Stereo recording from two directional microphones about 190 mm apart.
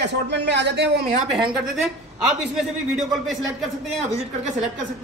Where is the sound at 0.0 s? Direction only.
65° right (ahead or behind).